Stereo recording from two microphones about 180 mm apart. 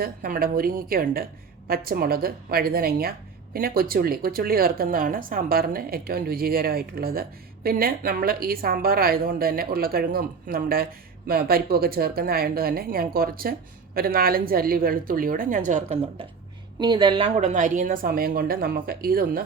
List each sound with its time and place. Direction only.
0.0 s a woman's voice: 55° right (ahead or behind)
16.8 s speech: 25° right (ahead or behind); by 19.5 s 55° right (ahead or behind)